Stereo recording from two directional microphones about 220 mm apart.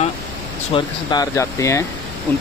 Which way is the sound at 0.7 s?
20° left (ahead or behind).